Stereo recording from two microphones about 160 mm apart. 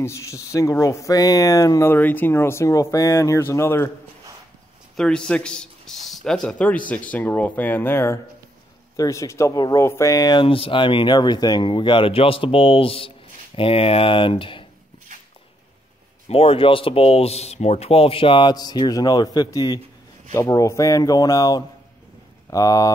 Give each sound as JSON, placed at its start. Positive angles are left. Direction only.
{"t": 0.0, "sound": "speech", "side_deg": 20}
{"t": 4.9, "sound": "a man's voice", "side_deg": 5}
{"t": 16.3, "sound": "speech", "side_deg": 35}